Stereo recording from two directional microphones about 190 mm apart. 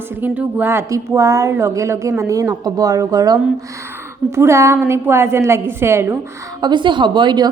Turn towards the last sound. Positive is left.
turn(degrees=-25)  # may be behind; listen again after turning